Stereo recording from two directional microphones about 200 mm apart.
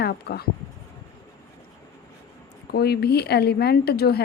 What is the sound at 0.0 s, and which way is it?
Speech, 55° left (ahead or behind).